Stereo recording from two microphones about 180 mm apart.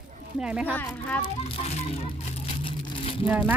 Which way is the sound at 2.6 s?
30° left (ahead or behind).